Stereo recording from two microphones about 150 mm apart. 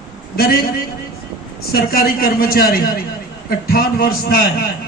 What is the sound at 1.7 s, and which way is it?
A woman's voice, 90° left.